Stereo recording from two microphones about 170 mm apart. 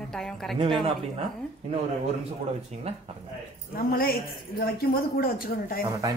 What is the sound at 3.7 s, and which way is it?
Speech, 60° left (ahead or behind).